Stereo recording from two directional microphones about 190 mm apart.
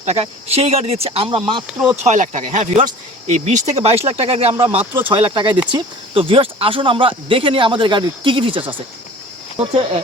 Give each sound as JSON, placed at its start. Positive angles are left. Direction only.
{"t": 0.0, "sound": "speech", "side_deg": -35}
{"t": 2.0, "sound": "speech", "side_deg": -40}